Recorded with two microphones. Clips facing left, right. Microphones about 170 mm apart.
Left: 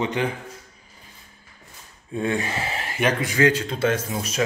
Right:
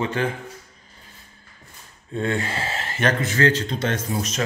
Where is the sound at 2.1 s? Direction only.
15° left (ahead or behind).